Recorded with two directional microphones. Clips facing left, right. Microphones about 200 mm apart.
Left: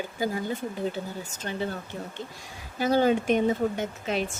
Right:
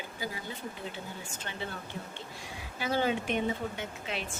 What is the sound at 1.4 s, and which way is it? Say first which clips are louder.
Speech: left 9 dB; 40° left (ahead or behind).